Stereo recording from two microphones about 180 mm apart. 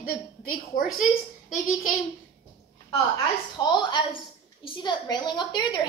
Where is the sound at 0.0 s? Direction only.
50° left (ahead or behind).